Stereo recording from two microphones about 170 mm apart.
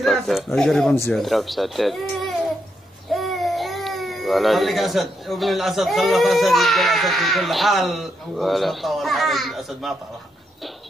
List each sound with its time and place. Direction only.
0.0 s speech: centre (ahead or behind)